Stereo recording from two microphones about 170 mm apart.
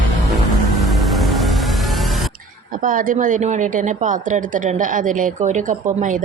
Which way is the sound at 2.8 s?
55° right (ahead or behind).